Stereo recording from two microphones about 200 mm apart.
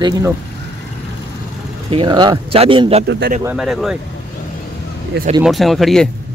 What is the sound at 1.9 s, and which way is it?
Speech, 25° right (ahead or behind).